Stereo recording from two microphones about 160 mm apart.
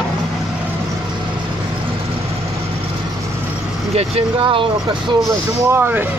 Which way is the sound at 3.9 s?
35° right (ahead or behind).